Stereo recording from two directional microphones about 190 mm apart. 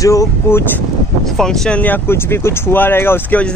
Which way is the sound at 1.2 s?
Centre (ahead or behind).